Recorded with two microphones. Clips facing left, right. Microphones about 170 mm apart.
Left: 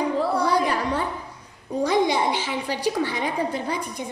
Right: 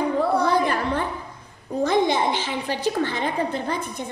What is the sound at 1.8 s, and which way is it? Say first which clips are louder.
Babbling: right 1 dB; 10° left (ahead or behind).